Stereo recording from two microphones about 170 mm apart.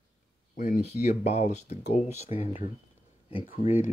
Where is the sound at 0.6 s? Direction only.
45° left (ahead or behind).